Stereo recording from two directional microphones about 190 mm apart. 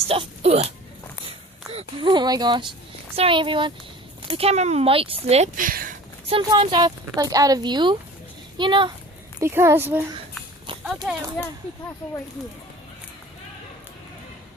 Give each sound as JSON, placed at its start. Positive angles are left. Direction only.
{"t": 0.1, "sound": "speech", "side_deg": -30}
{"t": 1.7, "sound": "speech", "side_deg": -25}
{"t": 6.2, "sound": "speech", "side_deg": -30}
{"t": 9.4, "sound": "speech", "side_deg": -15}